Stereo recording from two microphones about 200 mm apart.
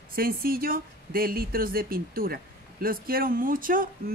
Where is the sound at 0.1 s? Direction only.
45° right (ahead or behind).